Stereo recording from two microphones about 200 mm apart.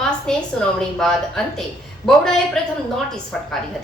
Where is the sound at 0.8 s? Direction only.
Centre (ahead or behind).